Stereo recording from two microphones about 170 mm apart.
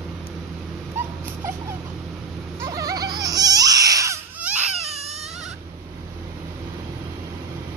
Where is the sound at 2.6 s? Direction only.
20° right (ahead or behind).